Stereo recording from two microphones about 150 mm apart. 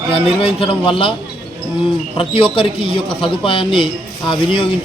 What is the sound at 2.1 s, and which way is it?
Speech, 35° left (ahead or behind).